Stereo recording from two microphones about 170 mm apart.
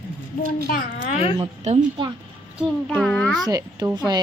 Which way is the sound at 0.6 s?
55° left (ahead or behind).